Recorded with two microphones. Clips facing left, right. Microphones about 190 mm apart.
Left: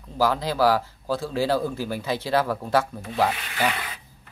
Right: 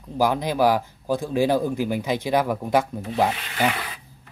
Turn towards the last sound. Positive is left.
turn(degrees=-20)  # may be behind; listen again after turning